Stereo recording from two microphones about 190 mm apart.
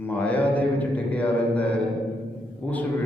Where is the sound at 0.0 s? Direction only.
10° left (ahead or behind).